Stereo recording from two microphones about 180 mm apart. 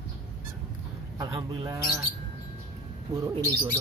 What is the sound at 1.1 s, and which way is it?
Speech, 20° right (ahead or behind).